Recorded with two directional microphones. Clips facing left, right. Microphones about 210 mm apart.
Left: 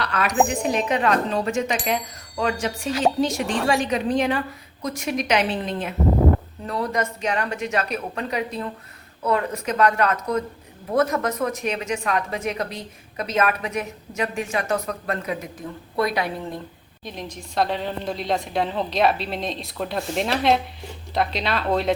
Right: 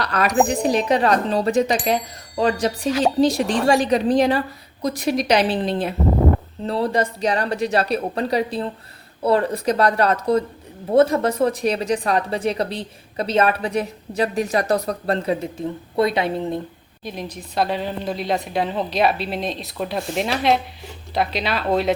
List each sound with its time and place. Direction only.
0.0 s a sound: 40° right (ahead or behind)
0.4 s a woman's voice: 35° right (ahead or behind)
17.0 s a woman's voice: 5° right (ahead or behind)